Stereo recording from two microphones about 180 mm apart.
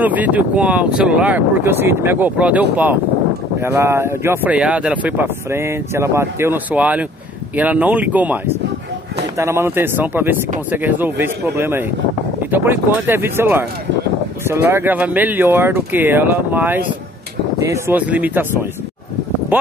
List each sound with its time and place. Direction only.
0.0 s speech: 10° right (ahead or behind)
9.4 s speech: 15° right (ahead or behind)
19.5 s speech: 10° right (ahead or behind)